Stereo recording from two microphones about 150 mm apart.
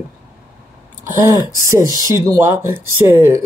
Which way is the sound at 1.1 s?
20° right (ahead or behind).